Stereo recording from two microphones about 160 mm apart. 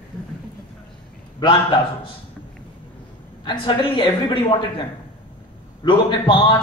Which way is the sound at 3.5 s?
30° left (ahead or behind).